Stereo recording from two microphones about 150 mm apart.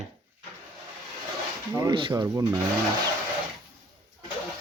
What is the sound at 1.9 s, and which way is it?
Speech, 35° right (ahead or behind).